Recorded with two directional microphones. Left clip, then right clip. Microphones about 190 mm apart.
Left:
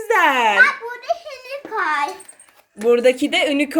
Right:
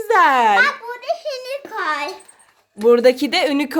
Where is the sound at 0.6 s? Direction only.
45° right (ahead or behind).